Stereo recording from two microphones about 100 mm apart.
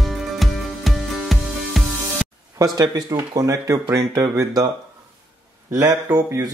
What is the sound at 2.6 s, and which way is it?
Speech, 35° right (ahead or behind).